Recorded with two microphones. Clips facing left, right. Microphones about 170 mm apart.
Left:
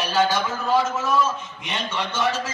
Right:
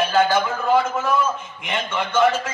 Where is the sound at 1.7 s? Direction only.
55° right (ahead or behind).